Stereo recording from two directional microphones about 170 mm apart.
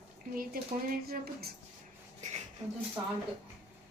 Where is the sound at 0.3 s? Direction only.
60° right (ahead or behind).